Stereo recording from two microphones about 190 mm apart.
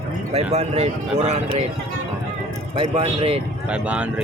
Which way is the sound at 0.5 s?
35° right (ahead or behind).